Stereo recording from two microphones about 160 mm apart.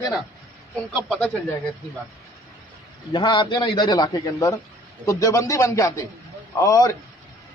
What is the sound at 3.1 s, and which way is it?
A man's voice, 30° left (ahead or behind).